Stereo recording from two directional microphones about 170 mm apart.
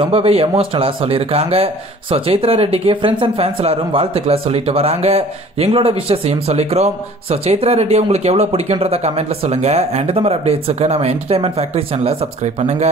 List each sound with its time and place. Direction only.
0.0 s speech: 35° right (ahead or behind)